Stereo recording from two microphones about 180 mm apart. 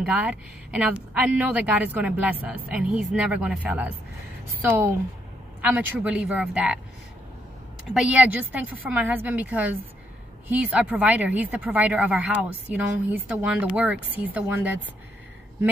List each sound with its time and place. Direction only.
0.0 s speech: 5° right (ahead or behind)
7.9 s speech: 5° right (ahead or behind)